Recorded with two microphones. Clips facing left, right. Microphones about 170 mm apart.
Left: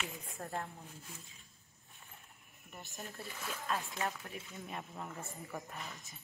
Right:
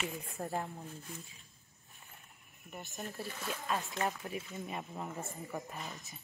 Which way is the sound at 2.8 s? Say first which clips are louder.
Right 5 dB; 5° right (ahead or behind).